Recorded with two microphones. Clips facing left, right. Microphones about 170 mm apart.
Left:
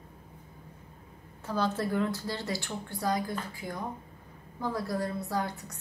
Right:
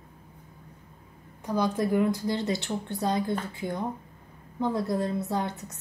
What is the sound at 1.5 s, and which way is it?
A woman's voice, 15° right (ahead or behind).